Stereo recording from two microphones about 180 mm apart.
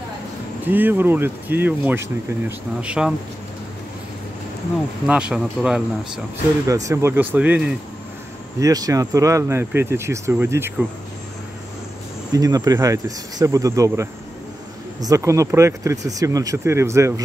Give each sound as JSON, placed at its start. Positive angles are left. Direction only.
{"t": 0.7, "sound": "speech", "side_deg": -10}
{"t": 5.0, "sound": "speech", "side_deg": -5}
{"t": 6.7, "sound": "speech", "side_deg": -15}
{"t": 8.5, "sound": "speech", "side_deg": -20}
{"t": 12.3, "sound": "speech", "side_deg": -20}